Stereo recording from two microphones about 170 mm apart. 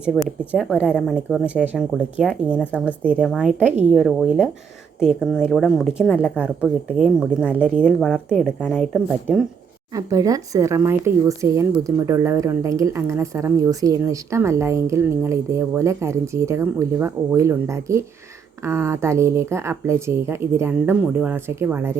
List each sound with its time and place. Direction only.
0.3 s speech: centre (ahead or behind)
9.9 s a woman's voice: 20° right (ahead or behind)